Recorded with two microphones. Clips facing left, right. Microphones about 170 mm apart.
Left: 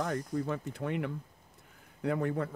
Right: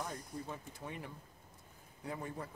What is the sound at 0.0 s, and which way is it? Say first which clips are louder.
Speech: left 11 dB; 70° left (ahead or behind).